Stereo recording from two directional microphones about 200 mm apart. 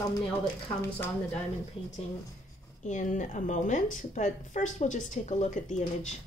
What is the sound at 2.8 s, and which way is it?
A woman's voice, 40° left (ahead or behind).